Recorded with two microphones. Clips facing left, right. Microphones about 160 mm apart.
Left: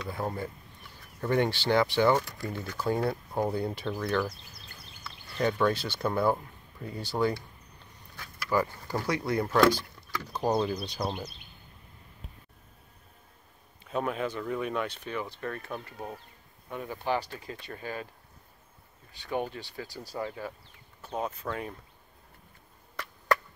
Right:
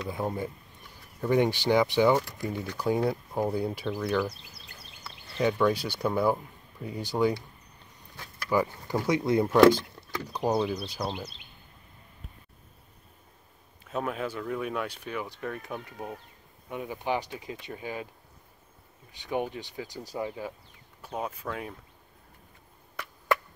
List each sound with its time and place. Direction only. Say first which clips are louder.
0.1 s speech: right 1 dB; 15° right (ahead or behind)
5.4 s speech: right 2 dB; 10° right (ahead or behind)
10.4 s speech: right 1 dB; 5° right (ahead or behind)
13.8 s speech: left 1 dB; centre (ahead or behind)
19.1 s speech: right 1 dB; 15° right (ahead or behind)